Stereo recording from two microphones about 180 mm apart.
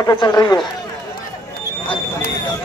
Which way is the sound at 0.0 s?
20° left (ahead or behind).